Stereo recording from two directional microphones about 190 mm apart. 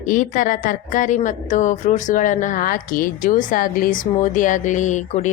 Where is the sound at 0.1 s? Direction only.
45° left (ahead or behind).